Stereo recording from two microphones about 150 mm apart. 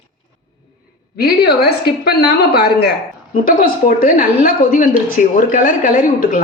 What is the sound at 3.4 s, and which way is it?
A woman's voice, 75° left (ahead or behind).